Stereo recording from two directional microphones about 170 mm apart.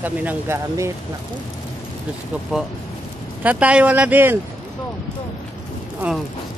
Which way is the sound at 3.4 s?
10° right (ahead or behind).